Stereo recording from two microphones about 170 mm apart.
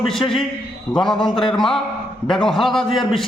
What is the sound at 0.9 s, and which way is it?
A man's voice, 5° left (ahead or behind).